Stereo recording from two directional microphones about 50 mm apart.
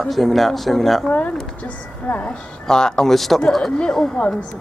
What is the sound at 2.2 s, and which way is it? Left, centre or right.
Speech, centre.